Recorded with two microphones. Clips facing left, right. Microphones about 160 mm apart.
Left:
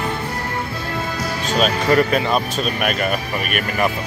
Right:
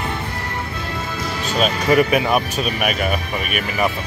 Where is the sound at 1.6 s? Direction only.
Centre (ahead or behind).